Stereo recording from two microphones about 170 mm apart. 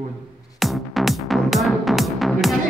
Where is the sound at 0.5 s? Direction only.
Centre (ahead or behind).